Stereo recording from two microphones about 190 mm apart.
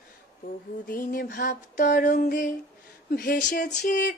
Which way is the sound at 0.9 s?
45° left (ahead or behind).